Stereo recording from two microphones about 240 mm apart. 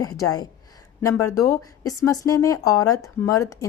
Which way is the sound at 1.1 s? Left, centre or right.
Left.